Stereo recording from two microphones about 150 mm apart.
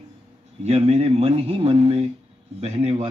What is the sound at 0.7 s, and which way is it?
Speech, 40° right (ahead or behind).